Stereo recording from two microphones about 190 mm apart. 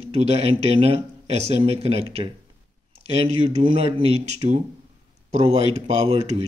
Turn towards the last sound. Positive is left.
turn(degrees=-35)  # may be behind; listen again after turning